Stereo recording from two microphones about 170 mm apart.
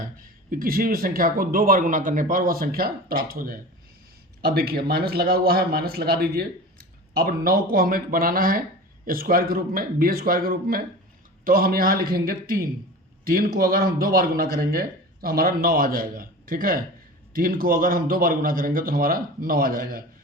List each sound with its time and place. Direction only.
0.2 s a man's voice: 55° right (ahead or behind)